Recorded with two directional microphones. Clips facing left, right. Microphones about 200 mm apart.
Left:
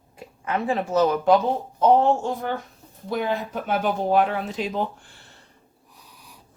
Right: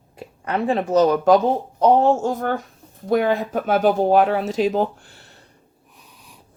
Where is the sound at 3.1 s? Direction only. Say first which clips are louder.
Right 7 dB; 55° right (ahead or behind).